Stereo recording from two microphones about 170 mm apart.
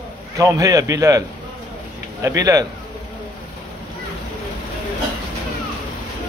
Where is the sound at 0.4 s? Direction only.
20° right (ahead or behind).